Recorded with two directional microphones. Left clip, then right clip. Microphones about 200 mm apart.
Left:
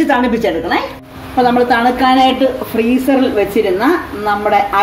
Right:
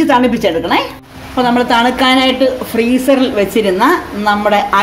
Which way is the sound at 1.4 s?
35° right (ahead or behind).